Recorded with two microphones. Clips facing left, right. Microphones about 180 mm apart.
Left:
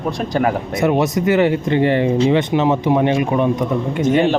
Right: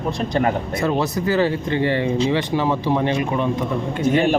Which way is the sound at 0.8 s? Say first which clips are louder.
Left 5 dB; 20° left (ahead or behind).